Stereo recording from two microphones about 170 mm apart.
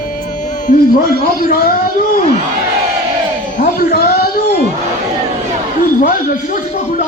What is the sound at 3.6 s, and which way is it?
Speech, 60° left (ahead or behind).